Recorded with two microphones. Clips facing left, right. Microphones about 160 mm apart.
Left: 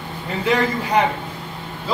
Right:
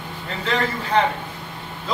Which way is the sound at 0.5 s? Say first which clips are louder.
Left 2 dB; 15° left (ahead or behind).